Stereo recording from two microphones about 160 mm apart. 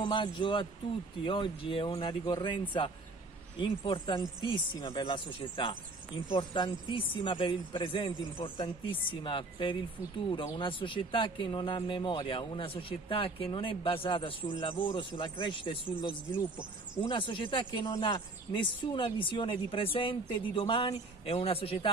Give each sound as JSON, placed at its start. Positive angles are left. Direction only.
{"t": 0.0, "sound": "speech", "side_deg": 30}